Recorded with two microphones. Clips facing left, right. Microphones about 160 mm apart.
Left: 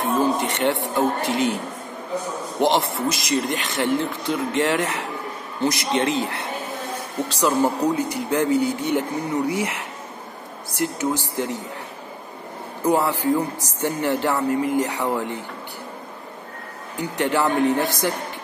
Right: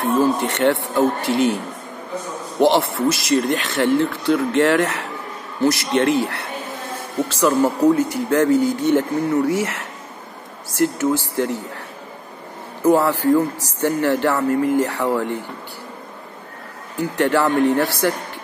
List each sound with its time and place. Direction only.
0.0 s speech: 15° left (ahead or behind)
2.6 s speech: 15° left (ahead or behind)
12.8 s speech: 15° left (ahead or behind)
17.2 s speech: 15° left (ahead or behind)